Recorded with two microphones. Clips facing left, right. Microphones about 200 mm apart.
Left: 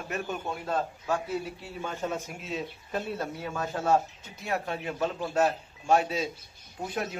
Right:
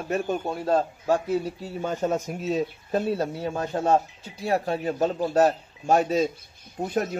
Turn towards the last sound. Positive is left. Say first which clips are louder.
# right 6 dB
turn(degrees=-40)  # may be behind; listen again after turning